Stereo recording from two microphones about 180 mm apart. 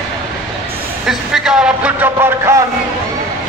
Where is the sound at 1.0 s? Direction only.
5° right (ahead or behind).